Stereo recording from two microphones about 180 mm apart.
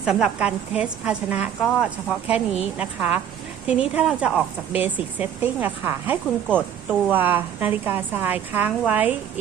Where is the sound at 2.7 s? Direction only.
10° right (ahead or behind).